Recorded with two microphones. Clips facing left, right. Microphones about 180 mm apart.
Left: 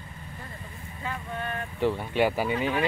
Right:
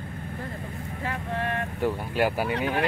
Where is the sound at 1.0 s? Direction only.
75° right (ahead or behind).